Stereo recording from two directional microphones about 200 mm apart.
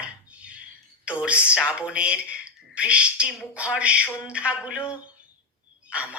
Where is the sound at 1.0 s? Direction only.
5° right (ahead or behind).